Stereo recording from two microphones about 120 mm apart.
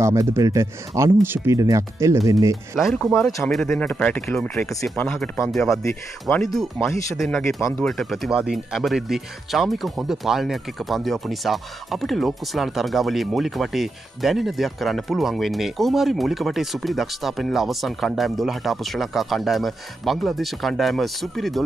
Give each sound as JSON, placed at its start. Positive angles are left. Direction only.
{"t": 0.0, "sound": "speech", "side_deg": -25}
{"t": 2.8, "sound": "speech", "side_deg": 0}
{"t": 6.8, "sound": "speech", "side_deg": 25}
{"t": 7.8, "sound": "speech", "side_deg": 0}